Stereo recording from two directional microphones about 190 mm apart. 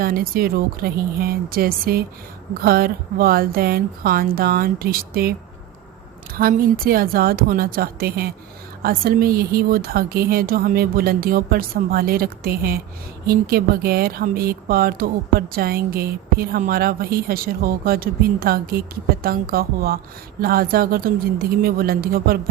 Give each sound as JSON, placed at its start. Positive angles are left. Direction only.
{"t": 0.0, "sound": "speech", "side_deg": -50}
{"t": 6.3, "sound": "speech", "side_deg": -50}